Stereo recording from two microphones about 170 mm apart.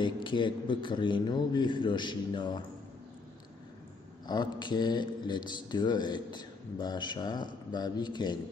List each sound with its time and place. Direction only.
0.0 s speech: 30° left (ahead or behind)
4.3 s speech: 25° left (ahead or behind)